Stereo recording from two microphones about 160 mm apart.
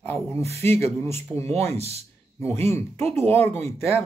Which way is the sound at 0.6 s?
15° left (ahead or behind).